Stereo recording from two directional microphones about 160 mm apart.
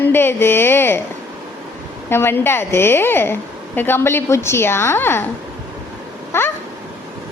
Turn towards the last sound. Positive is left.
turn(degrees=15)  # may be behind; listen again after turning